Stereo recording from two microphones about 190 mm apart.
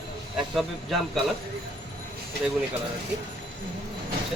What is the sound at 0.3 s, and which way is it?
Speech, centre (ahead or behind).